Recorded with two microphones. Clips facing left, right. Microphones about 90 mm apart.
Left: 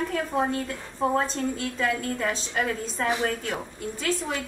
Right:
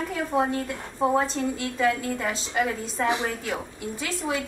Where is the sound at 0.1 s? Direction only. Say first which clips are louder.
Right 1 dB; 5° right (ahead or behind).